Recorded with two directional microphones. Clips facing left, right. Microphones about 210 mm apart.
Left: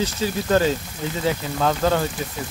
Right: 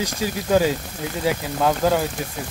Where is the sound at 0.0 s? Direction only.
10° right (ahead or behind).